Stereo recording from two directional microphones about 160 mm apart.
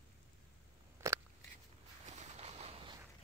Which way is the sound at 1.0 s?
20° right (ahead or behind).